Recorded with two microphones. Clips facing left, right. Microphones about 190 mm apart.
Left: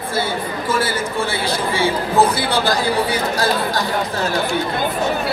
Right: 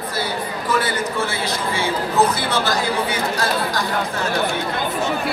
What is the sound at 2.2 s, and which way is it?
Speech, 35° left (ahead or behind).